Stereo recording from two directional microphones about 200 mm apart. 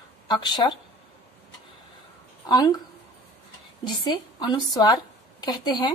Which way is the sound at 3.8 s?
20° left (ahead or behind).